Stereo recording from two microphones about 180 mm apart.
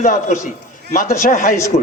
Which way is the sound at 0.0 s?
45° left (ahead or behind).